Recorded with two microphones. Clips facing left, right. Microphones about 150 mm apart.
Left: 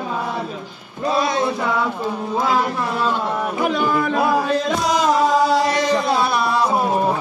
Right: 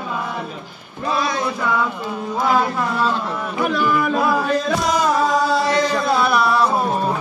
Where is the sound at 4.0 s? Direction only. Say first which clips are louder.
Even; 25° left (ahead or behind).